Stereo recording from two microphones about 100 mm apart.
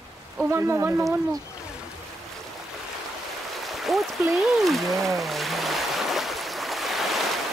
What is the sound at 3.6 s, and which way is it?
Stream, centre (ahead or behind).